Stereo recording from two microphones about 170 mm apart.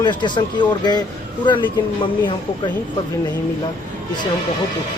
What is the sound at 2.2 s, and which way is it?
Speech, 30° left (ahead or behind).